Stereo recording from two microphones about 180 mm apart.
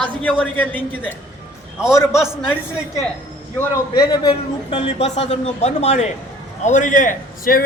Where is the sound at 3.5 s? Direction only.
20° left (ahead or behind).